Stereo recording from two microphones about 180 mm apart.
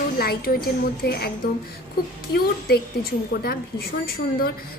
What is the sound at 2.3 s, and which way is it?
A woman's voice, 60° left (ahead or behind).